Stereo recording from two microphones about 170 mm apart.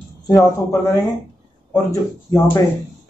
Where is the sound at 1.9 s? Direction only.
15° left (ahead or behind).